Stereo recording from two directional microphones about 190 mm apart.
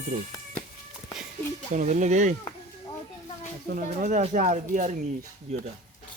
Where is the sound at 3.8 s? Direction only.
40° right (ahead or behind).